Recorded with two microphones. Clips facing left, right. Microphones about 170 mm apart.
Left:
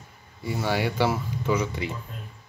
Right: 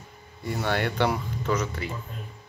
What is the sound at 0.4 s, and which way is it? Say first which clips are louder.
Speech: left 1 dB; 5° left (ahead or behind).